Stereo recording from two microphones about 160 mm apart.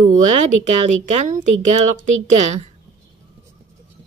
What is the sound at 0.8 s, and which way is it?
Speech, 50° right (ahead or behind).